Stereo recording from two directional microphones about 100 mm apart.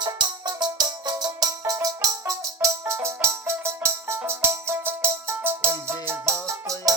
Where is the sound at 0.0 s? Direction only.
45° right (ahead or behind).